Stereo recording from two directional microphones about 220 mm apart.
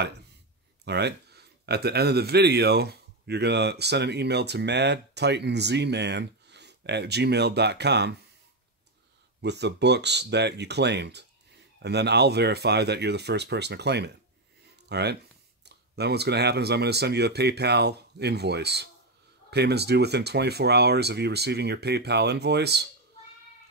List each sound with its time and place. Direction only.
0.8 s a man's voice: 50° right (ahead or behind)
9.4 s a man's voice: 50° right (ahead or behind)